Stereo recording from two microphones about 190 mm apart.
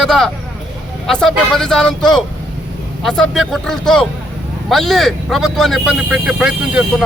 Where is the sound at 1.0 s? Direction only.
5° left (ahead or behind).